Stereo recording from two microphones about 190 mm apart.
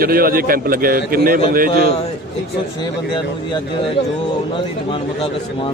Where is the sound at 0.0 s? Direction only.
50° right (ahead or behind).